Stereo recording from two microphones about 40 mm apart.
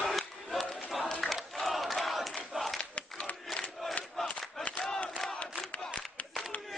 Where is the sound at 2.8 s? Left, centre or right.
Left.